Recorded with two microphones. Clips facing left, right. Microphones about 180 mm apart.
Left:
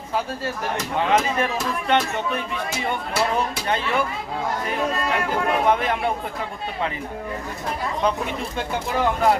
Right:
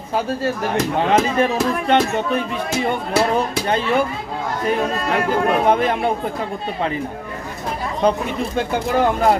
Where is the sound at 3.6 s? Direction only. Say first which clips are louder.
Right 5 dB; 35° right (ahead or behind).